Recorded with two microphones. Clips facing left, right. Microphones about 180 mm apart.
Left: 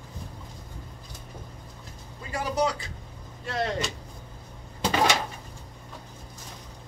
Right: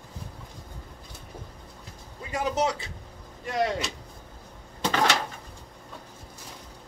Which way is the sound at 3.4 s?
15° right (ahead or behind).